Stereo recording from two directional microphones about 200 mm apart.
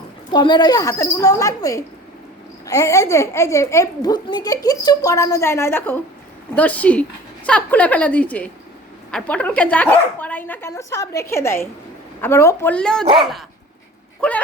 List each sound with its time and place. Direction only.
0.3 s a child's voice: 20° left (ahead or behind); by 13.1 s 5° left (ahead or behind)
14.2 s speech: 5° left (ahead or behind)